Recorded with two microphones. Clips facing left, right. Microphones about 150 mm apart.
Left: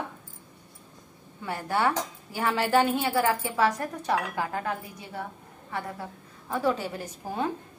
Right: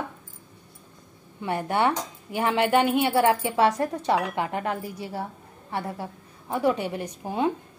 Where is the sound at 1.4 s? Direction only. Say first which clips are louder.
Right 3 dB; 25° right (ahead or behind).